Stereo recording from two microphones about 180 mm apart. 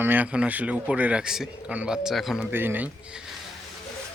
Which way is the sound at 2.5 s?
10° right (ahead or behind).